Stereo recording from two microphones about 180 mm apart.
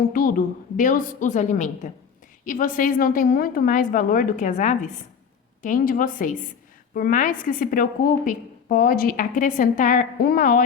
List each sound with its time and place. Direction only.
0.1 s a woman's voice: 50° left (ahead or behind)